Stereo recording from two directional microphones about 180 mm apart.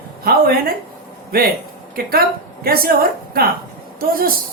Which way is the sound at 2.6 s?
55° right (ahead or behind).